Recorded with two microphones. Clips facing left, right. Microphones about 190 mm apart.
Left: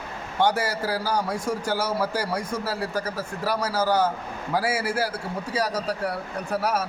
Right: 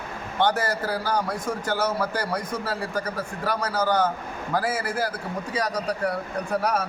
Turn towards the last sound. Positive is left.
turn(degrees=5)  # may be behind; listen again after turning